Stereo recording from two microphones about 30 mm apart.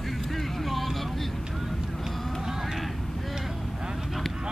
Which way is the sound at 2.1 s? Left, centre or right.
Centre.